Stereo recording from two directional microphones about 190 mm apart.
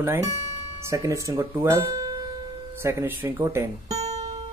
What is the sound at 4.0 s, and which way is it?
Music, 35° right (ahead or behind).